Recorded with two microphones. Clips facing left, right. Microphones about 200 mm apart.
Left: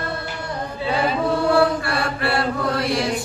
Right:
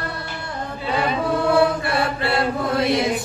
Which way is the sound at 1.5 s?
20° right (ahead or behind).